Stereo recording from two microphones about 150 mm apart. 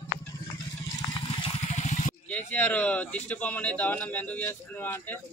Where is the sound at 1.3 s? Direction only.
35° left (ahead or behind).